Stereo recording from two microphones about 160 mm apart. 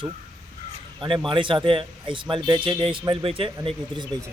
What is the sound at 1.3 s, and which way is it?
Speech, 30° right (ahead or behind).